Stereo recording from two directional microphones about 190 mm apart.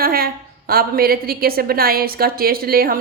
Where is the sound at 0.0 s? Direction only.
50° right (ahead or behind).